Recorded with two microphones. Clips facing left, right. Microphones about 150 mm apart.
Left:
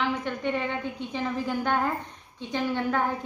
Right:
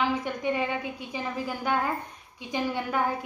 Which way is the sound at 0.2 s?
10° right (ahead or behind).